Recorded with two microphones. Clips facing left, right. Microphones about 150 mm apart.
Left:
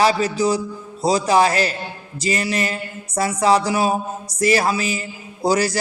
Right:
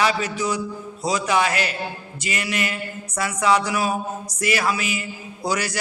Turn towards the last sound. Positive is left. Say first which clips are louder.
# left 6 dB
turn(degrees=35)  # may be behind; listen again after turning